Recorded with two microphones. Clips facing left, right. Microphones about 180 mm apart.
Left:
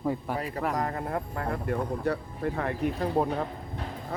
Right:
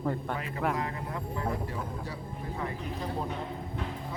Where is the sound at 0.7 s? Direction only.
50° left (ahead or behind).